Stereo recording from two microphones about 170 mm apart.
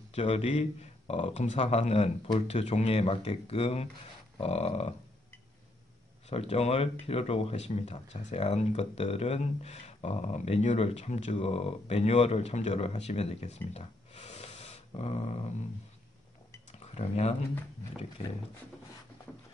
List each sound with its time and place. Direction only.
0.1 s speech: 35° left (ahead or behind)
6.2 s speech: 40° left (ahead or behind)
16.7 s speech: 40° left (ahead or behind)